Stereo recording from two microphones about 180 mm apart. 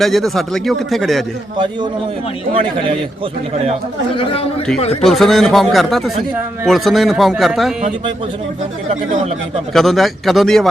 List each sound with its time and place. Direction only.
0.0 s speech: centre (ahead or behind)
1.5 s a man's voice: 25° right (ahead or behind)
4.1 s a man's voice: 30° left (ahead or behind)
5.0 s speech: centre (ahead or behind)
9.7 s speech: centre (ahead or behind)